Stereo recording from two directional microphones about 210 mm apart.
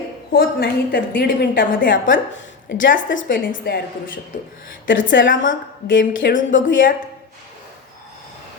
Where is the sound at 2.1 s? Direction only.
60° left (ahead or behind).